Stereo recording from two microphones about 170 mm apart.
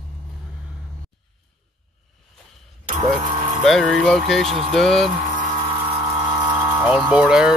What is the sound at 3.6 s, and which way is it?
Speech, centre (ahead or behind).